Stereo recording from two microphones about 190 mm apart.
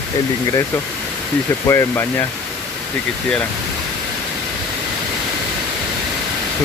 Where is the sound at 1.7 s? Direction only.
15° left (ahead or behind).